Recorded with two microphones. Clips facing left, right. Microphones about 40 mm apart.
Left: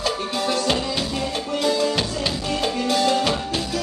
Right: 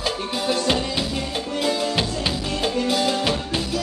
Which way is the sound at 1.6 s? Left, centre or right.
Centre.